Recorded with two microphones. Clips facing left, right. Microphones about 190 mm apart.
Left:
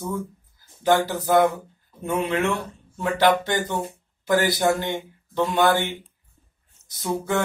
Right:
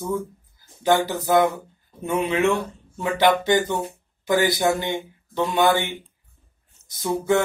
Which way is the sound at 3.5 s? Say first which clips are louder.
Right 4 dB; 15° right (ahead or behind).